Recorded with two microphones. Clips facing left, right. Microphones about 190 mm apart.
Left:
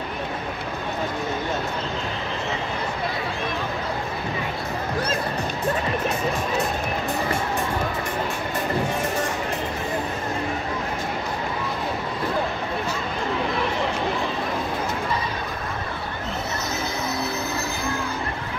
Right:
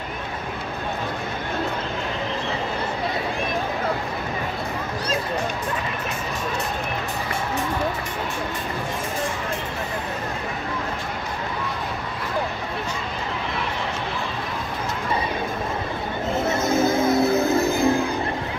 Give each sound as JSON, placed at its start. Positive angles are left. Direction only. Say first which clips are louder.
{"t": 16.4, "sound": "music", "louder": "right 9 dB", "side_deg": -50}